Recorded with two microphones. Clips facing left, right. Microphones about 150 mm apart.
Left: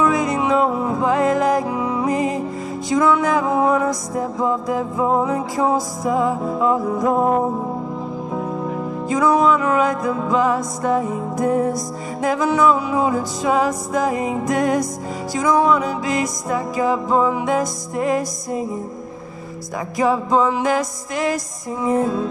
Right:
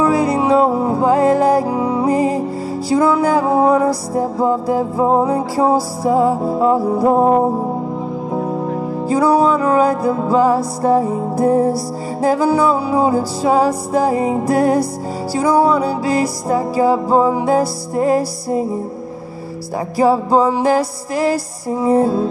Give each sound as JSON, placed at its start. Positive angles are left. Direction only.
{"t": 0.0, "sound": "music", "side_deg": -30}
{"t": 20.0, "sound": "music", "side_deg": -30}